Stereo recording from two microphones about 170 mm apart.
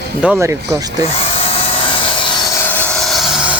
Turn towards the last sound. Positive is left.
turn(degrees=-5)  # may be behind; listen again after turning